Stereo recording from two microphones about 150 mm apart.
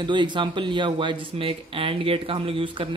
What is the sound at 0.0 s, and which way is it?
Speech, 30° right (ahead or behind).